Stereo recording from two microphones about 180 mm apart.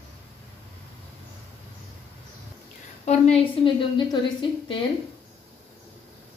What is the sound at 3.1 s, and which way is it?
A woman's voice, 30° left (ahead or behind).